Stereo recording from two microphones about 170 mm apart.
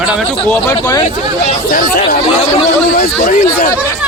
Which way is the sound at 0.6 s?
15° left (ahead or behind).